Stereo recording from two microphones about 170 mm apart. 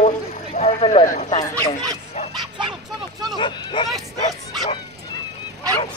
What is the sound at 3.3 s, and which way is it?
Speech, 30° left (ahead or behind).